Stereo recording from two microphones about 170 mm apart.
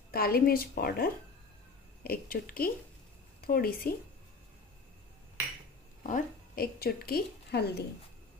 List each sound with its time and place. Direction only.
0.1 s a woman's voice: 60° left (ahead or behind)
6.0 s a woman's voice: 55° left (ahead or behind); by 7.8 s 70° left (ahead or behind)